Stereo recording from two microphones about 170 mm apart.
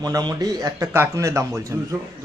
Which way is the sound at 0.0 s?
20° right (ahead or behind).